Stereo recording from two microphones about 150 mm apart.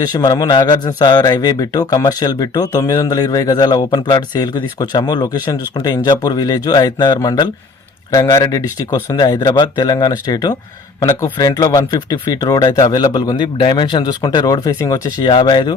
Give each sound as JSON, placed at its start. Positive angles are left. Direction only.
{"t": 0.0, "sound": "speech", "side_deg": 25}